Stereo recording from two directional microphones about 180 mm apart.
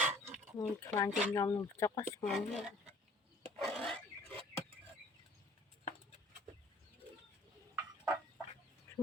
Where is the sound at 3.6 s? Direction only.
5° left (ahead or behind).